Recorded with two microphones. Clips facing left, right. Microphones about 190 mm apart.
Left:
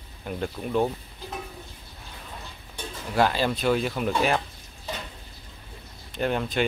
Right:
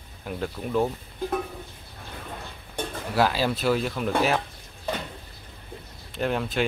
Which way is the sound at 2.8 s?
55° right (ahead or behind).